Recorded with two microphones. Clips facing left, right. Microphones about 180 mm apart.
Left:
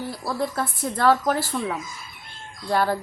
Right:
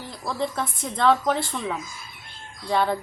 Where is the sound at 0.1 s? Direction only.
5° left (ahead or behind).